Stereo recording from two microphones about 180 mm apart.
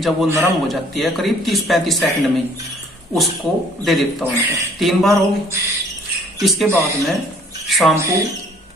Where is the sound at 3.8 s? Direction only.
Centre (ahead or behind).